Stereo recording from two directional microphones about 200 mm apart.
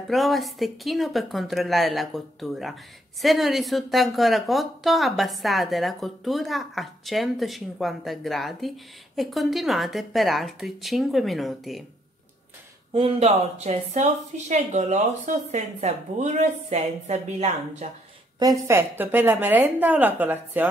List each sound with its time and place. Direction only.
0.1 s a woman's voice: centre (ahead or behind)
12.9 s speech: 30° right (ahead or behind)
18.4 s a woman's voice: 15° right (ahead or behind)